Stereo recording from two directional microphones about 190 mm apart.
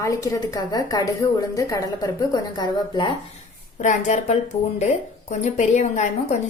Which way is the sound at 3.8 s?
40° left (ahead or behind).